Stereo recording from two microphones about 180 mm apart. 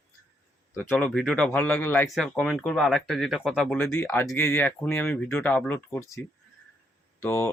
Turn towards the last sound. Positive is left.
turn(degrees=15)  # may be behind; listen again after turning